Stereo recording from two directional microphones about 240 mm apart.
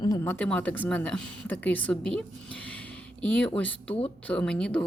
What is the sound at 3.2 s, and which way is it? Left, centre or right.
Speech, centre.